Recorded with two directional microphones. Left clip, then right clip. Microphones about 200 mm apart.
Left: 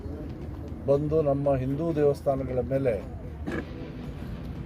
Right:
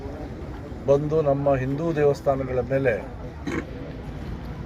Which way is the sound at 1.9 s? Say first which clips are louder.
Right 3 dB; 5° left (ahead or behind).